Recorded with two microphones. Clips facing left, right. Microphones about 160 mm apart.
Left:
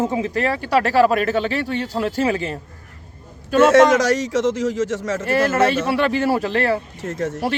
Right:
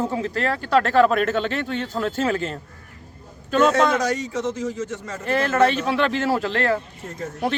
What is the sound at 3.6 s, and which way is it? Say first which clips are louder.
A man's voice: left 6 dB; 90° left.